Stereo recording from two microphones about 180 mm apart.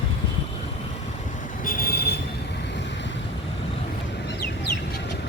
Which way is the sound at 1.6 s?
50° left (ahead or behind).